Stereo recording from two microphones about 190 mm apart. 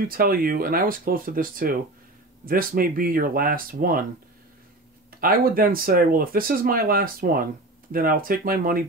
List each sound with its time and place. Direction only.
0.0 s speech: 50° right (ahead or behind)
5.1 s speech: 50° right (ahead or behind)